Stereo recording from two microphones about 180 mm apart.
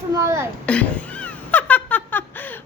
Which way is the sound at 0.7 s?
5° left (ahead or behind).